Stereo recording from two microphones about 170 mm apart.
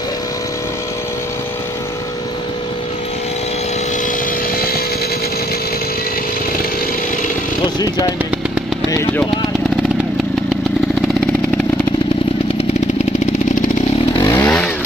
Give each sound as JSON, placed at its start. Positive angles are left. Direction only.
{"t": 7.6, "sound": "a sound", "side_deg": 20}
{"t": 8.8, "sound": "vehicle", "side_deg": 20}
{"t": 14.2, "sound": "chainsaw", "side_deg": 15}